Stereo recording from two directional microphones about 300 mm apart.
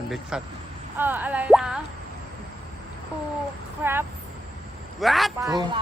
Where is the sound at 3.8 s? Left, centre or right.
Centre.